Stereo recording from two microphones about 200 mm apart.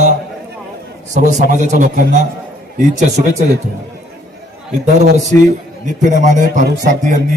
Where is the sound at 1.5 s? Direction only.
40° right (ahead or behind).